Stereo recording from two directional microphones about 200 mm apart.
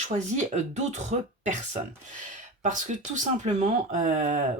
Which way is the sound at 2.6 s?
40° right (ahead or behind).